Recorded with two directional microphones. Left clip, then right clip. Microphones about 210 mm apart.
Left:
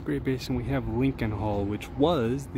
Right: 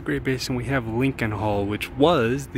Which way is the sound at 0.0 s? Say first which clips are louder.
Right 5 dB; centre (ahead or behind).